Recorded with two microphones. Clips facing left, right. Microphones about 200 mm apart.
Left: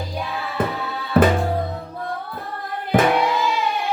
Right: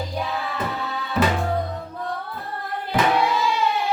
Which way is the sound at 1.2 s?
55° left (ahead or behind).